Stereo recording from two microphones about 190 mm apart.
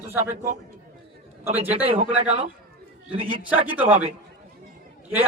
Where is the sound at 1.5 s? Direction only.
30° right (ahead or behind).